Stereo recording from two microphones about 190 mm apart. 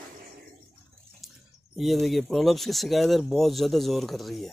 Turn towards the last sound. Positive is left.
turn(degrees=0)  # may be behind; listen again after turning